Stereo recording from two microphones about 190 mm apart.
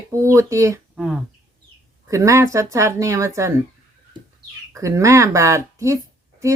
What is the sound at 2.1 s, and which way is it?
Speech, 15° right (ahead or behind).